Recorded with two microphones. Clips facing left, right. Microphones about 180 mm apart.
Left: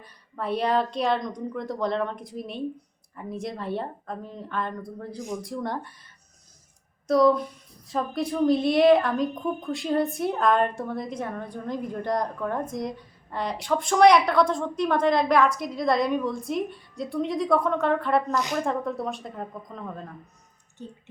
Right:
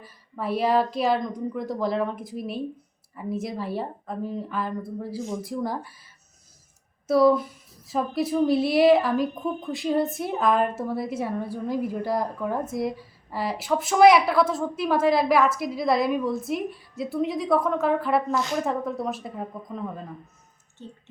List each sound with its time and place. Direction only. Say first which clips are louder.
0.0 s a woman's voice: right 1 dB; 5° right (ahead or behind)
7.1 s a woman's voice: right 1 dB; 5° right (ahead or behind)
20.8 s a sound: left 2 dB; 15° left (ahead or behind)